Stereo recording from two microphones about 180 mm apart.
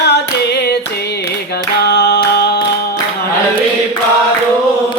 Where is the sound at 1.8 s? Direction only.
65° left (ahead or behind).